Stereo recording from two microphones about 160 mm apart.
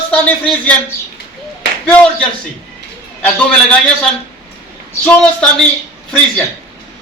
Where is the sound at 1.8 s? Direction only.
5° left (ahead or behind).